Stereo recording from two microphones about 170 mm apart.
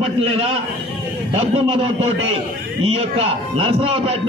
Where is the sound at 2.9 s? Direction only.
35° right (ahead or behind).